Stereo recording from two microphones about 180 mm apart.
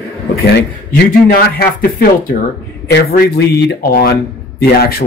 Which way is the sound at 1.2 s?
55° left (ahead or behind).